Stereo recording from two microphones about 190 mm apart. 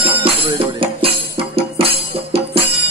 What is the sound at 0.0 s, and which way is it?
Music, 30° right (ahead or behind).